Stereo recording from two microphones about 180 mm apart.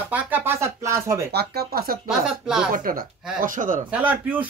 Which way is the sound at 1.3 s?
60° right (ahead or behind).